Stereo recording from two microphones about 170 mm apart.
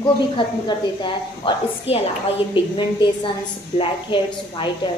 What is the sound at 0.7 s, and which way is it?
A woman's voice, 30° left (ahead or behind).